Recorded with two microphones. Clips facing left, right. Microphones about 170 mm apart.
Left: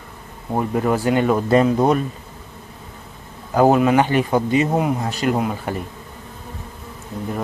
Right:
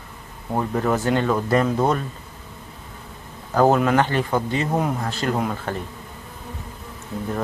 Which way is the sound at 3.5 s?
10° left (ahead or behind).